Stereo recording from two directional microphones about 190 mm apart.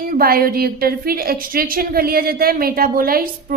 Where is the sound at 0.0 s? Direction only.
50° right (ahead or behind).